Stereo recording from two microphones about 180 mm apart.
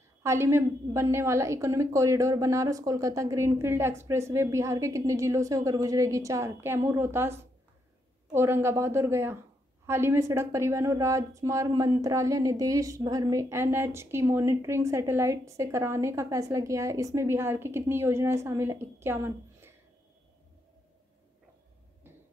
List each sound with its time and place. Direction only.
0.2 s a woman's voice: 15° right (ahead or behind)